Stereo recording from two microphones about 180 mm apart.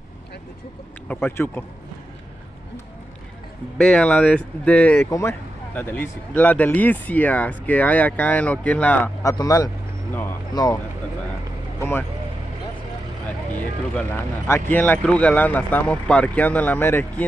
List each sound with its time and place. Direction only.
1.0 s speech: 10° left (ahead or behind)
3.7 s speech: 5° left (ahead or behind)
13.9 s speech: 10° left (ahead or behind)